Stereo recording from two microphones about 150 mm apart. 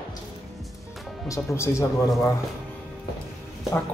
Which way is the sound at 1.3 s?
20° left (ahead or behind).